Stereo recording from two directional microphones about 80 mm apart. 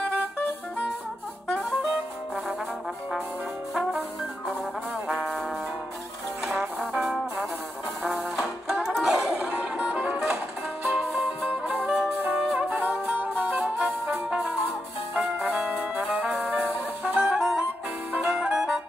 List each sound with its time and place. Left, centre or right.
6.4 s music: centre
9.0 s music: centre
11.1 s music: centre
13.6 s music: centre
16.0 s brass instrument: centre
17.0 s music: centre
17.4 s music: centre